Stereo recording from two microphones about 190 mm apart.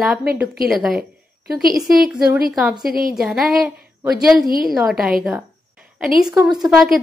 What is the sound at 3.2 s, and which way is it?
A woman's voice, centre (ahead or behind).